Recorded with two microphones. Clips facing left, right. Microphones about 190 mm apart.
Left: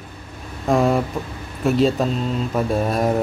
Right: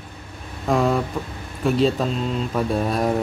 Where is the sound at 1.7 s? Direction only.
Centre (ahead or behind).